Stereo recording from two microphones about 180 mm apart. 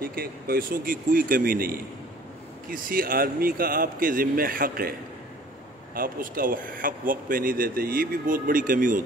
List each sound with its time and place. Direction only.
0.0 s speech: 55° right (ahead or behind)
5.9 s speech: 55° right (ahead or behind)